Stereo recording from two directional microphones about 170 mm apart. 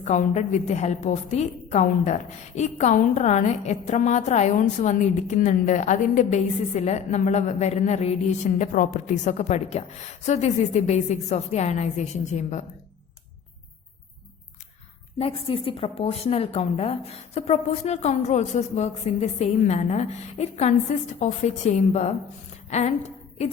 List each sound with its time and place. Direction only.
0.0 s a woman's voice: 45° left (ahead or behind)
15.2 s a woman's voice: 35° left (ahead or behind)